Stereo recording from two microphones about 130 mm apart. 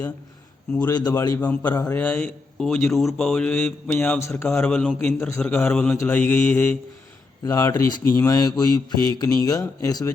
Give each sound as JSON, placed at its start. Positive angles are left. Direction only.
{"t": 0.9, "sound": "speech", "side_deg": 25}
{"t": 1.3, "sound": "speech", "side_deg": 10}
{"t": 7.4, "sound": "speech", "side_deg": 25}